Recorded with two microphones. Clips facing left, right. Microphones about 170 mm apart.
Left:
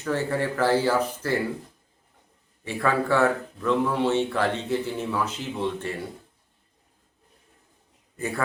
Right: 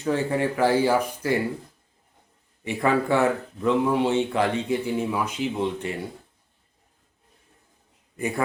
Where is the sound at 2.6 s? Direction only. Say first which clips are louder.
Right 2 dB; 15° right (ahead or behind).